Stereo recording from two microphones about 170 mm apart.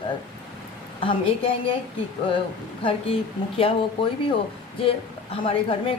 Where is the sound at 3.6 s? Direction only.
30° left (ahead or behind).